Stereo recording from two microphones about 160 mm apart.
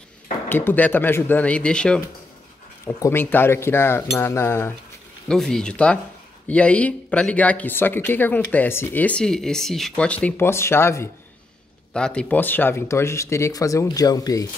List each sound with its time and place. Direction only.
0.5 s speech: 10° left (ahead or behind)
3.0 s speech: 15° left (ahead or behind)
5.3 s speech: 5° left (ahead or behind); by 14.5 s 20° left (ahead or behind)